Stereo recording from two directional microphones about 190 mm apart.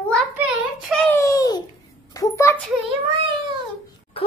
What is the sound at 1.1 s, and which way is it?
A child's voice, 15° left (ahead or behind).